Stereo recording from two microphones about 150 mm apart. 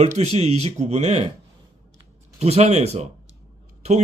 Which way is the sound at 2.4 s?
45° right (ahead or behind).